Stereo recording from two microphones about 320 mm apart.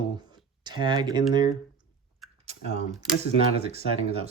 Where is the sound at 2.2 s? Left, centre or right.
Centre.